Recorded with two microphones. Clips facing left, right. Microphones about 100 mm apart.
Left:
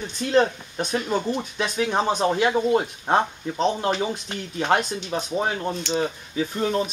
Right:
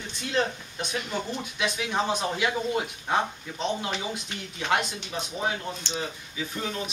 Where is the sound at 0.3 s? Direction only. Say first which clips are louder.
Left 8 dB; 40° left (ahead or behind).